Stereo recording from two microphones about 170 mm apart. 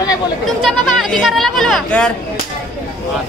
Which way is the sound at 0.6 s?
Centre (ahead or behind).